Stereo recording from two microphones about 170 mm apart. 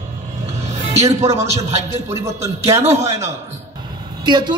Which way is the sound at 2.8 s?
40° right (ahead or behind).